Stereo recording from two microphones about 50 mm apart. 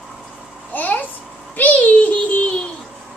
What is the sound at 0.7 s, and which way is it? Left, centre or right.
A child's voice, left.